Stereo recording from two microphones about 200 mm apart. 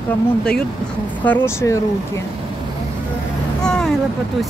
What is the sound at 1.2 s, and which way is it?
Speech, 10° left (ahead or behind).